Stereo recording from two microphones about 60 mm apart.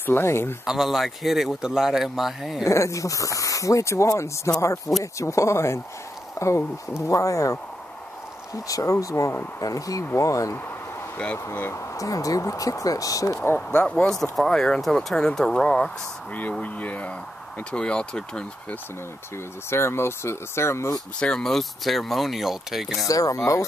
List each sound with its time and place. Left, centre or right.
0.0 s speech: left
0.7 s speech: centre
2.6 s speech: left
8.5 s speech: left
9.6 s speech: left
11.7 s speech: left
13.7 s speech: centre
14.1 s speech: centre
16.6 s speech: left
19.3 s speech: left
21.2 s speech: centre
23.0 s speech: left